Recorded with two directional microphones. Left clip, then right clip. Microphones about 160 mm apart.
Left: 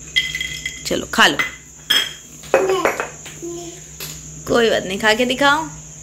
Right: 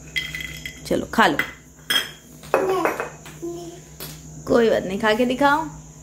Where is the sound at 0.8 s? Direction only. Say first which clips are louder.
Left 3 dB; 10° right (ahead or behind).